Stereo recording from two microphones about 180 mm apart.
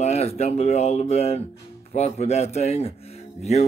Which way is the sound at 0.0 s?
35° left (ahead or behind).